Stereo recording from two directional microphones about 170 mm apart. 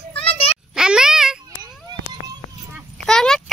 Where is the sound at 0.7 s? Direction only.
5° right (ahead or behind).